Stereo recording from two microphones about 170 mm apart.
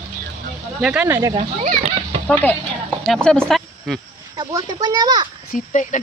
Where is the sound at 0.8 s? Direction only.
5° right (ahead or behind).